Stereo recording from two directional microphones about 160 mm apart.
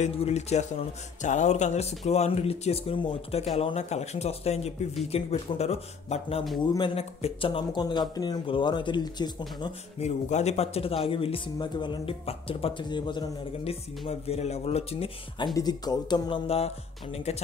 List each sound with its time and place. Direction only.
0.0 s a man's voice: 45° left (ahead or behind)
6.6 s speech: 25° left (ahead or behind)
7.0 s speech: 40° left (ahead or behind)
10.0 s a man's voice: 45° left (ahead or behind); by 16.3 s 25° left (ahead or behind)
16.4 s a man's voice: 40° left (ahead or behind)